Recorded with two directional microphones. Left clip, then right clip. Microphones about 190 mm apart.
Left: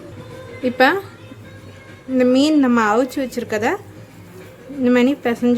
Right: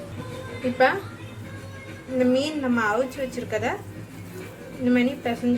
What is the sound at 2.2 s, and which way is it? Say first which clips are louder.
A woman's voice: left 8 dB; 60° left (ahead or behind).